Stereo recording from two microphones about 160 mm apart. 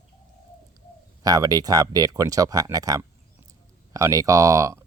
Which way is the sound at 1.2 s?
25° right (ahead or behind).